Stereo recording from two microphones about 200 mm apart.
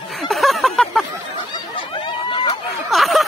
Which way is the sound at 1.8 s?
25° left (ahead or behind).